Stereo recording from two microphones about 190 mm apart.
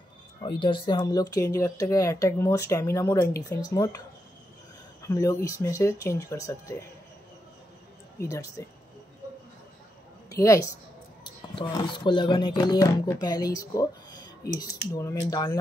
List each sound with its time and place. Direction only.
0.4 s speech: 25° left (ahead or behind)
5.0 s speech: 15° left (ahead or behind)
8.2 s speech: 15° left (ahead or behind)
10.3 s speech: 15° left (ahead or behind)
15.0 s speech: 15° left (ahead or behind)